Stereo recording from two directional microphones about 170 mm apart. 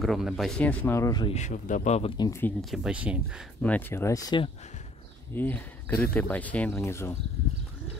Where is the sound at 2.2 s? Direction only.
15° left (ahead or behind).